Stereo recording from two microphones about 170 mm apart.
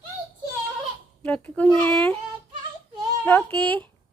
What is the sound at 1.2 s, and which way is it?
Speech, 5° left (ahead or behind).